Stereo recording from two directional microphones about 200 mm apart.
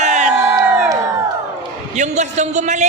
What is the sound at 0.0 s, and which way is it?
Crowd, 35° right (ahead or behind).